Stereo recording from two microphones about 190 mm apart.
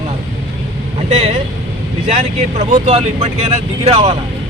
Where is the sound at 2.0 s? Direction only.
35° right (ahead or behind).